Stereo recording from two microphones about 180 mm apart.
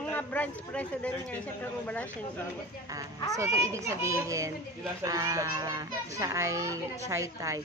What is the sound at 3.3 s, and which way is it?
A child's voice, 15° right (ahead or behind).